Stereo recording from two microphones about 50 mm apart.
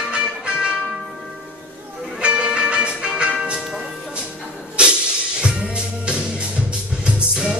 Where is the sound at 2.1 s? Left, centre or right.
Centre.